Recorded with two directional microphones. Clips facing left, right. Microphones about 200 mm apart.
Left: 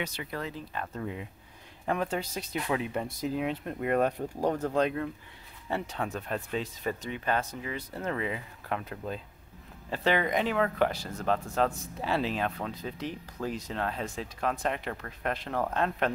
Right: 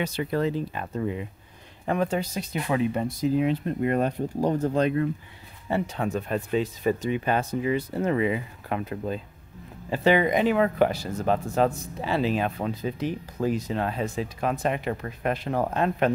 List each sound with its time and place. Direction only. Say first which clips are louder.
0.0 s speech: right 10 dB; 35° right (ahead or behind)
0.7 s speech: right 6 dB; 5° right (ahead or behind)
5.7 s speech: right 6 dB; centre (ahead or behind)